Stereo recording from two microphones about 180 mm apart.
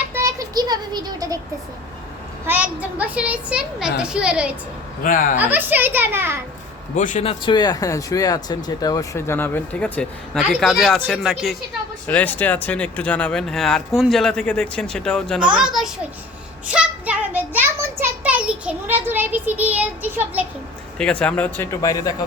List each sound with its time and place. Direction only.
0.1 s a sound: 15° right (ahead or behind)
2.5 s speech: 10° right (ahead or behind)
5.0 s speech: 50° left (ahead or behind)
5.4 s a child's voice: 10° right (ahead or behind)
6.9 s speech: 45° left (ahead or behind); by 15.9 s centre (ahead or behind)
16.7 s a sound: 10° right (ahead or behind)
18.0 s a child's voice: 10° right (ahead or behind)
21.0 s speech: 5° left (ahead or behind)